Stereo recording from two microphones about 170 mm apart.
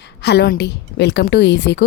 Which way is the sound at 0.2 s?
80° left.